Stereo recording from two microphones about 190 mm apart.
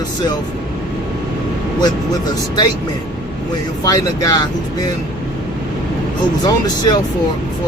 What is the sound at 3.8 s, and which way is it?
Speech, 20° left (ahead or behind).